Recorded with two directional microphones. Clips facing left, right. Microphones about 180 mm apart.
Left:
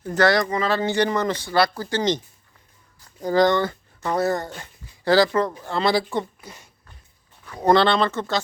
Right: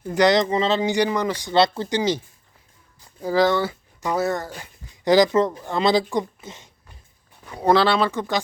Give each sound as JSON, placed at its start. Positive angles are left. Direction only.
{"t": 0.0, "sound": "speech", "side_deg": -15}
{"t": 0.8, "sound": "speech", "side_deg": -10}
{"t": 2.0, "sound": "speech", "side_deg": -10}
{"t": 5.0, "sound": "speech", "side_deg": -15}
{"t": 7.4, "sound": "speech", "side_deg": -10}